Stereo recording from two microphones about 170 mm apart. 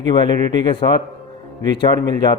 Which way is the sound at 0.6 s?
25° left (ahead or behind).